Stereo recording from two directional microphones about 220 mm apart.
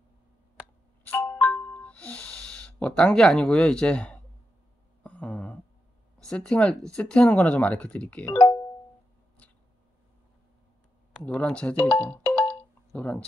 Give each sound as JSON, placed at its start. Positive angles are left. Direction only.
{"t": 1.0, "sound": "music", "side_deg": 5}
{"t": 5.0, "sound": "a sound", "side_deg": 5}
{"t": 6.1, "sound": "speech", "side_deg": 5}
{"t": 8.3, "sound": "speech", "side_deg": 25}
{"t": 11.1, "sound": "speech", "side_deg": 5}